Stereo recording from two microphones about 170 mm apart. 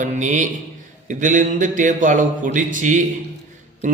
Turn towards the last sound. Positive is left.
turn(degrees=-50)  # may be behind; listen again after turning